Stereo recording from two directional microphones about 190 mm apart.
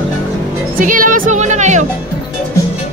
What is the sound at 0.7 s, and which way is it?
Speech, 45° right (ahead or behind).